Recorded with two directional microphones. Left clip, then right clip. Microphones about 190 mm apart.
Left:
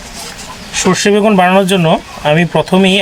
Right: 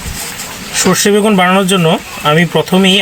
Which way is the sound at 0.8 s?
10° left (ahead or behind).